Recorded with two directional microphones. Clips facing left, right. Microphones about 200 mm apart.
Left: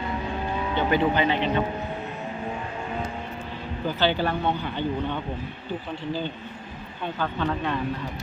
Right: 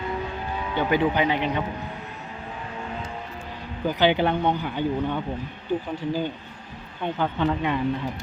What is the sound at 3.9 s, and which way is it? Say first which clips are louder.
A man's voice: right 3 dB; 15° right (ahead or behind).